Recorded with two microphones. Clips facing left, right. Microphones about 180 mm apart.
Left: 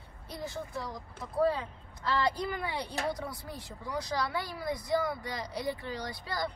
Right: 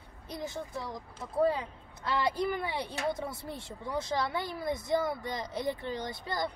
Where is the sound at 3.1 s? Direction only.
25° right (ahead or behind).